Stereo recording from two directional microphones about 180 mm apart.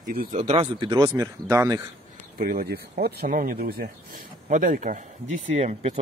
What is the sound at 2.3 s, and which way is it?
Speech, 50° right (ahead or behind).